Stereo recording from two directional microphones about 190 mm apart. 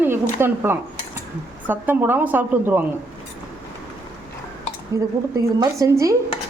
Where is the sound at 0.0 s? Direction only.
10° right (ahead or behind).